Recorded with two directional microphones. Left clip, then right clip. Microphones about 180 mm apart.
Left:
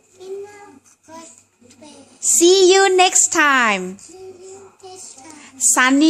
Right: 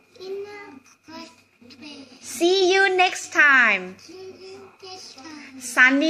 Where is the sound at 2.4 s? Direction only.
50° left (ahead or behind).